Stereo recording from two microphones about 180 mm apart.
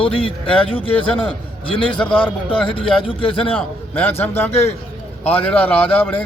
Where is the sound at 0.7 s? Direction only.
30° left (ahead or behind).